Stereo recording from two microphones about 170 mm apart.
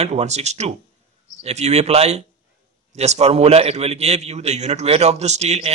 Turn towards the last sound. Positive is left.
turn(degrees=-40)  # may be behind; listen again after turning